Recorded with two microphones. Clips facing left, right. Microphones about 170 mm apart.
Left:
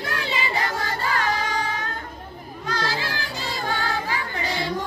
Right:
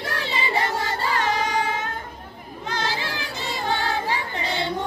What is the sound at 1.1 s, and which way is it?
Music, 20° right (ahead or behind).